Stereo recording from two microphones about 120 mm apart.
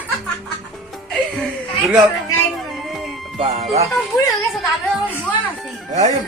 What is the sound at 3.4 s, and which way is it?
Speech, 55° right (ahead or behind).